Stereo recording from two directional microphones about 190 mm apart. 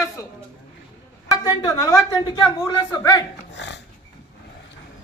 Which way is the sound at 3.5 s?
65° left (ahead or behind).